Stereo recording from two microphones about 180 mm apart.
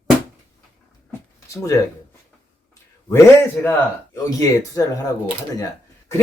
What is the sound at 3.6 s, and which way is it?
Speech, 5° left (ahead or behind).